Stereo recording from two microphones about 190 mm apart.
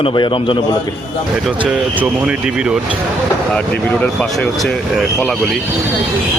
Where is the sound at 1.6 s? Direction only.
5° right (ahead or behind).